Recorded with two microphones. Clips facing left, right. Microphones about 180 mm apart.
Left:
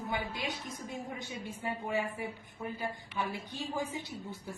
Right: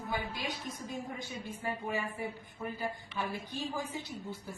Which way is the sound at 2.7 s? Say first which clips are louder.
Left 1 dB; 15° left (ahead or behind).